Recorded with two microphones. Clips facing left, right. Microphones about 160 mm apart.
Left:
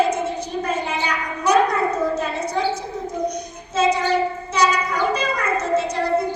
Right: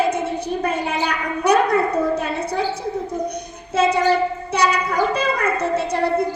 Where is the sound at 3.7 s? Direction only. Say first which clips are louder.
Right 1 dB; 60° right (ahead or behind).